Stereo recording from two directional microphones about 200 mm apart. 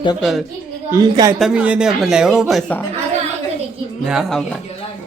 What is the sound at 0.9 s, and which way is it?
Speech, 20° right (ahead or behind).